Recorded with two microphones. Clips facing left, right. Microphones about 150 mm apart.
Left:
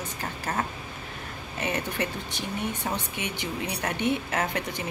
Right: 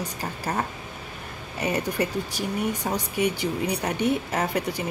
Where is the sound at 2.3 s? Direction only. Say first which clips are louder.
Right 5 dB; 10° right (ahead or behind).